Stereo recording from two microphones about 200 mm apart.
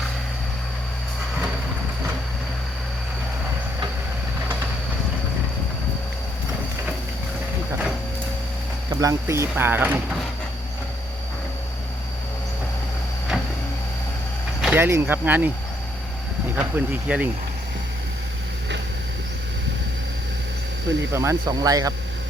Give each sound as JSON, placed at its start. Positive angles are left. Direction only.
{"t": 8.9, "sound": "speech", "side_deg": -15}
{"t": 13.3, "sound": "vehicle", "side_deg": 0}
{"t": 14.6, "sound": "speech", "side_deg": -10}
{"t": 16.6, "sound": "speech", "side_deg": -10}
{"t": 21.1, "sound": "speech", "side_deg": -15}